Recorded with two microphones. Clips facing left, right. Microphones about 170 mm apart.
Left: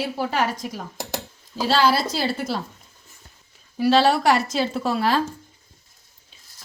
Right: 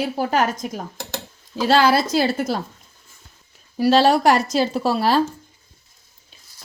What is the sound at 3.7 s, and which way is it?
Speech, 40° right (ahead or behind).